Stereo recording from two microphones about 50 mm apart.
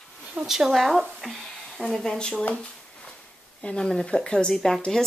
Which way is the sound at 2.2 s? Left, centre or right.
Centre.